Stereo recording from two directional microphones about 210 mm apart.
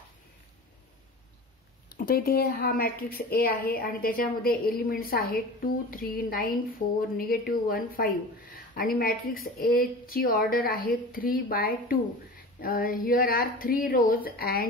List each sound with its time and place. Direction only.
2.0 s a woman's voice: 45° left (ahead or behind)